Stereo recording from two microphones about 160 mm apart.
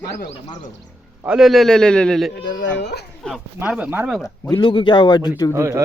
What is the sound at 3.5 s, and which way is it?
Speech, 5° right (ahead or behind).